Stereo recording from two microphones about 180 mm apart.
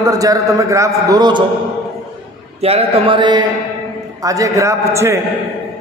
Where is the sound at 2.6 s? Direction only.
35° right (ahead or behind); by 5.2 s 15° right (ahead or behind).